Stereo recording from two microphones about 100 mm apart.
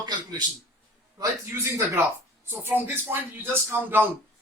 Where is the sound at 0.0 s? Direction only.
45° right (ahead or behind).